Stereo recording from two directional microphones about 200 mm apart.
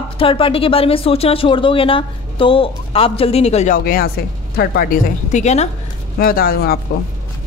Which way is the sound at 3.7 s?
45° left (ahead or behind).